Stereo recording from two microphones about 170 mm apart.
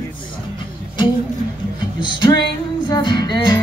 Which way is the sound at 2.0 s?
25° left (ahead or behind).